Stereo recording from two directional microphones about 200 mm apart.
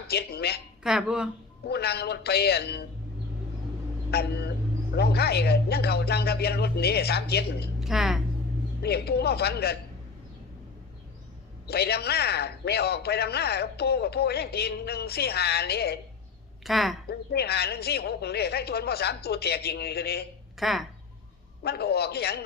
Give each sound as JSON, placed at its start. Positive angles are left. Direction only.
{"t": 0.1, "sound": "a man's voice", "side_deg": 55}
{"t": 0.8, "sound": "speech", "side_deg": -5}
{"t": 1.6, "sound": "a man's voice", "side_deg": 55}
{"t": 4.1, "sound": "a sound", "side_deg": 55}
{"t": 4.9, "sound": "a man's voice", "side_deg": 55}
{"t": 7.8, "sound": "a woman's voice", "side_deg": 0}
{"t": 8.8, "sound": "a man's voice", "side_deg": 55}
{"t": 11.7, "sound": "a man's voice", "side_deg": 55}
{"t": 16.6, "sound": "speech", "side_deg": 0}
{"t": 17.1, "sound": "a man's voice", "side_deg": 55}
{"t": 20.6, "sound": "speech", "side_deg": 0}
{"t": 21.6, "sound": "a man's voice", "side_deg": 55}